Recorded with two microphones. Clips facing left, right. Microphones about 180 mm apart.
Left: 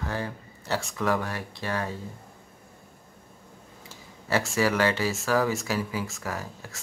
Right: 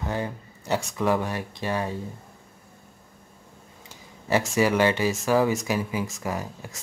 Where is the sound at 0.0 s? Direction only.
20° right (ahead or behind).